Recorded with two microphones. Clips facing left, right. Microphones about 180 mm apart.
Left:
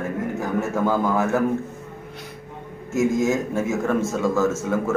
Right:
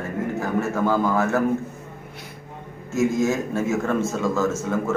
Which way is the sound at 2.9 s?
15° left (ahead or behind).